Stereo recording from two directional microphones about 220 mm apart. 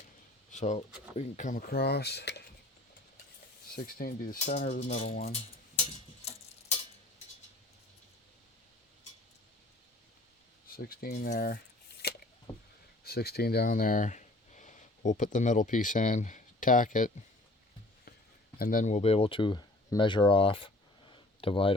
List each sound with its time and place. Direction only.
0.5 s speech: 30° left (ahead or behind); by 2.4 s 50° left (ahead or behind)
3.8 s speech: 40° left (ahead or behind)
10.7 s speech: 40° left (ahead or behind)
12.0 s a sound: 45° left (ahead or behind)
13.1 s speech: 45° left (ahead or behind)
18.6 s speech: 40° left (ahead or behind)